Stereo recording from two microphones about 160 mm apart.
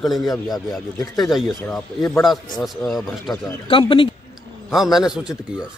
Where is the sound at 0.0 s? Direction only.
Centre (ahead or behind).